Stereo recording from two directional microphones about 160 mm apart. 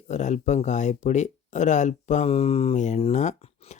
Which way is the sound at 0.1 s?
50° left (ahead or behind).